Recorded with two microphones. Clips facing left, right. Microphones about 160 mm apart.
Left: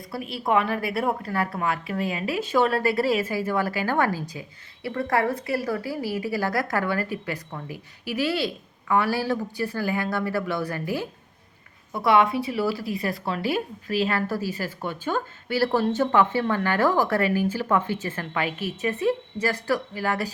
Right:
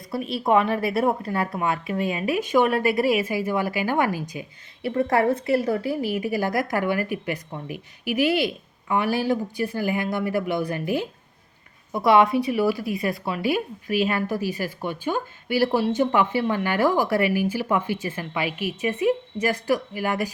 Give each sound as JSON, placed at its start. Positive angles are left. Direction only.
{"t": 0.1, "sound": "a woman's voice", "side_deg": -25}
{"t": 12.7, "sound": "speech", "side_deg": 35}
{"t": 13.5, "sound": "a woman's voice", "side_deg": -15}